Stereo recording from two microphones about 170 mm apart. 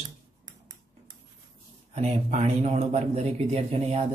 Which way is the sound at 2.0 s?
40° right (ahead or behind).